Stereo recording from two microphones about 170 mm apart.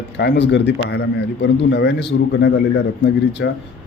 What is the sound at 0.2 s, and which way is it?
Speech, 85° left.